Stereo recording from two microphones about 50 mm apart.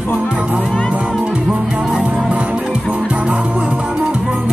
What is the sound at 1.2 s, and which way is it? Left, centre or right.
Music, right.